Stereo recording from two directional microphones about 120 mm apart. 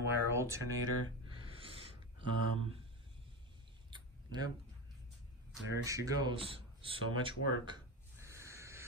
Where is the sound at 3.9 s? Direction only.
35° right (ahead or behind).